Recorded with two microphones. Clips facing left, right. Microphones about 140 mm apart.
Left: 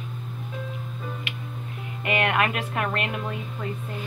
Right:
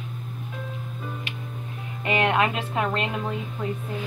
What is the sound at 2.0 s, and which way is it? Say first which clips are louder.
A woman's voice: right 2 dB; 30° right (ahead or behind).